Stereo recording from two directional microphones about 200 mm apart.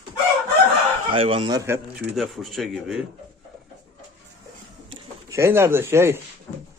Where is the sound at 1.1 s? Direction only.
25° right (ahead or behind).